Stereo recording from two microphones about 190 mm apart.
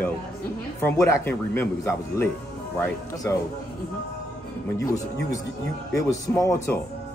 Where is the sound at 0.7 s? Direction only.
15° left (ahead or behind).